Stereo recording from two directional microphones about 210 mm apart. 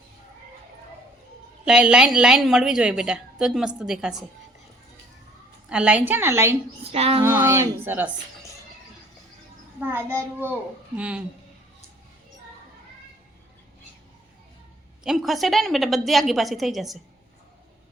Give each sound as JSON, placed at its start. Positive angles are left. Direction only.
{"t": 1.6, "sound": "a woman's voice", "side_deg": -5}
{"t": 5.6, "sound": "a child's voice", "side_deg": -5}
{"t": 6.9, "sound": "child singing", "side_deg": -30}
{"t": 7.3, "sound": "a child's voice", "side_deg": -10}
{"t": 9.9, "sound": "a child's voice", "side_deg": -10}
{"t": 15.0, "sound": "a woman's voice", "side_deg": 0}